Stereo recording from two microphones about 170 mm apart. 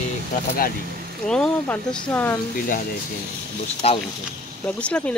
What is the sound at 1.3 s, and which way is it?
Speech, 10° left (ahead or behind).